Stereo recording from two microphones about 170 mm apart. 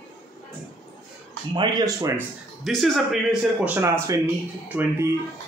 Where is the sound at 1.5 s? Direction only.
25° right (ahead or behind).